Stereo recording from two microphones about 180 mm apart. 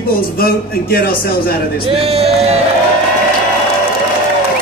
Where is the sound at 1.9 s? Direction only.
35° right (ahead or behind).